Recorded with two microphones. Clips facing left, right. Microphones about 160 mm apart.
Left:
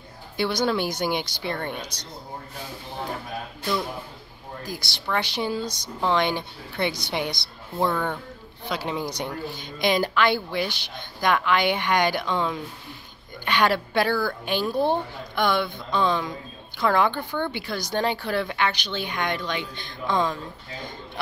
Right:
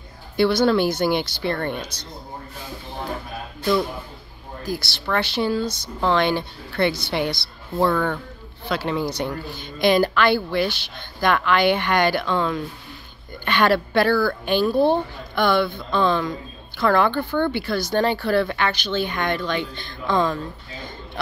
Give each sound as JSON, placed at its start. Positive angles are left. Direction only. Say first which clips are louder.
{"t": 0.4, "sound": "speech", "louder": "right 6 dB", "side_deg": 15}
{"t": 4.6, "sound": "speech", "louder": "right 5 dB", "side_deg": 15}